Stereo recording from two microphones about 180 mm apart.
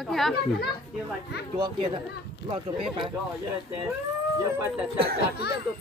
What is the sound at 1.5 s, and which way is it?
Speech, 25° right (ahead or behind).